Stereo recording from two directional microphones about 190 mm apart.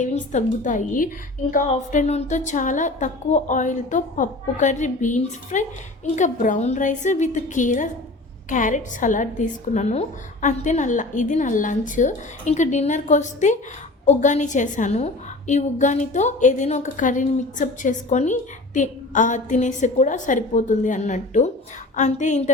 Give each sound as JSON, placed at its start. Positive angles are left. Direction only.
{"t": 0.0, "sound": "a woman's voice", "side_deg": 40}